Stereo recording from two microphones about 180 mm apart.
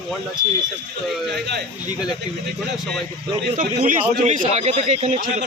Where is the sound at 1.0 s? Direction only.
Centre (ahead or behind).